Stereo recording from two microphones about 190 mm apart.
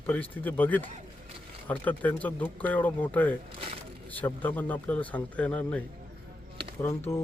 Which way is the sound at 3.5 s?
30° right (ahead or behind).